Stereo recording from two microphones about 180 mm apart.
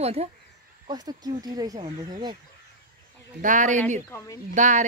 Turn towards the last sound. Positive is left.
turn(degrees=-45)  # may be behind; listen again after turning